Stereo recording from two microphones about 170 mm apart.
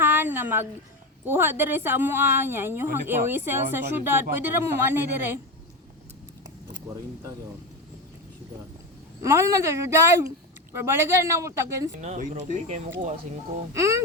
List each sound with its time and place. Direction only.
0.0 s a sound: 10° right (ahead or behind)
1.2 s speech: 10° right (ahead or behind)
9.2 s speech: 15° right (ahead or behind)
11.9 s speech: 45° right (ahead or behind)
13.7 s speech: 20° right (ahead or behind)